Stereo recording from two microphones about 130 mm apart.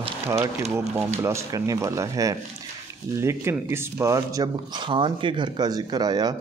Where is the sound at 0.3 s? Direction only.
20° right (ahead or behind).